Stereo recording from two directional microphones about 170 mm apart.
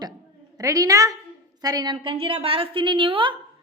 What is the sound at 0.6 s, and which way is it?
A woman's voice, 20° right (ahead or behind).